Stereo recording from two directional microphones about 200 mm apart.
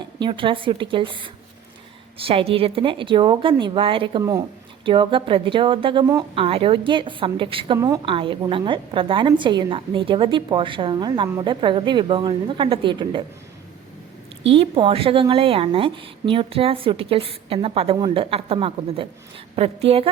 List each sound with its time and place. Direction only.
0.2 s a woman's voice: 25° right (ahead or behind)
14.4 s a woman's voice: 30° right (ahead or behind)